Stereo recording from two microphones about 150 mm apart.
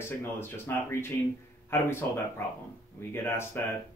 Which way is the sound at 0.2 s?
15° left (ahead or behind).